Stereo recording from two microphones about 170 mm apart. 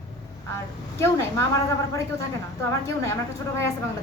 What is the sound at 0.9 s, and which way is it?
A woman's voice, 15° left (ahead or behind).